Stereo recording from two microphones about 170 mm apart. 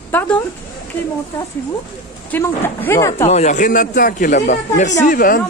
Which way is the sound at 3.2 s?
40° left (ahead or behind).